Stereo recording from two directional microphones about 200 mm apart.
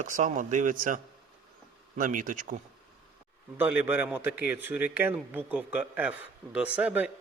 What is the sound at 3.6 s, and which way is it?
A man's voice, 10° right (ahead or behind).